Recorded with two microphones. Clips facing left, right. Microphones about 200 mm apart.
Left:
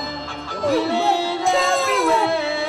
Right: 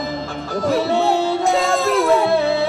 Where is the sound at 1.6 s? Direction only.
Centre (ahead or behind).